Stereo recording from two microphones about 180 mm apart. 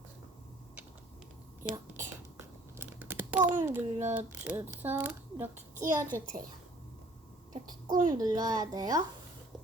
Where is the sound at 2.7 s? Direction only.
10° right (ahead or behind).